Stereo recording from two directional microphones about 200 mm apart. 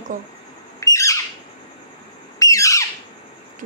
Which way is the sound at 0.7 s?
15° left (ahead or behind).